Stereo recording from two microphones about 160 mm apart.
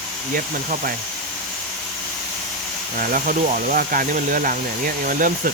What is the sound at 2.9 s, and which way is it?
Speech, 60° right (ahead or behind).